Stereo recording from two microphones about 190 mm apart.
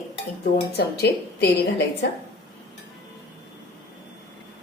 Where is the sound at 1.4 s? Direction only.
60° left (ahead or behind).